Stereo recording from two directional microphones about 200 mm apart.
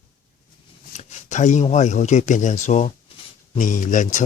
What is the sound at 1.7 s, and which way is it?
Speech, 35° left (ahead or behind).